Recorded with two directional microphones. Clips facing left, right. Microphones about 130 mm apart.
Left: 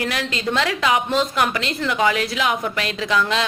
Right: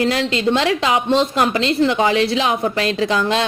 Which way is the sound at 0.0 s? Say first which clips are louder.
Right 7 dB; 25° right (ahead or behind).